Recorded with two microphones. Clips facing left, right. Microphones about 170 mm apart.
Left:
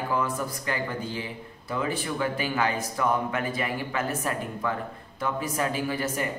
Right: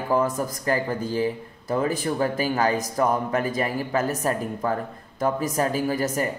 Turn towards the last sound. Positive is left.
turn(degrees=-40)  # may be behind; listen again after turning